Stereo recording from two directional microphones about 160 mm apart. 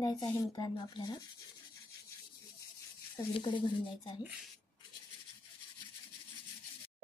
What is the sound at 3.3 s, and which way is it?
Speech, 30° left (ahead or behind).